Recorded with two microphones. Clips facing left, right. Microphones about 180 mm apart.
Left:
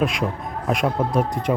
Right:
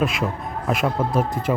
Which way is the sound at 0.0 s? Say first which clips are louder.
Even; 5° right (ahead or behind).